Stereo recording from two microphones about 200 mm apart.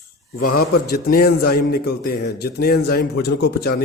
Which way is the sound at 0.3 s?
50° left (ahead or behind).